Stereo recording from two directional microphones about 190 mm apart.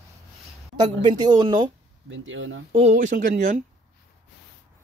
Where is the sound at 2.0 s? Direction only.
80° right.